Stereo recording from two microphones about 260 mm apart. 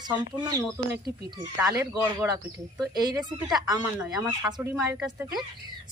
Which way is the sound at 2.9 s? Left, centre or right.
Centre.